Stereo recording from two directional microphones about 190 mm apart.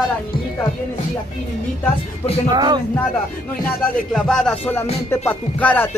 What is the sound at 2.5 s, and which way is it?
Speech, 20° right (ahead or behind).